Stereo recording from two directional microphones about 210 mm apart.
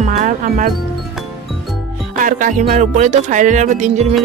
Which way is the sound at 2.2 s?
40° right (ahead or behind).